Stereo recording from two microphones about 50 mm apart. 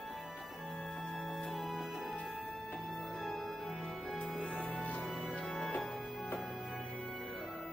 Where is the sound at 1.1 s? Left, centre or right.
Centre.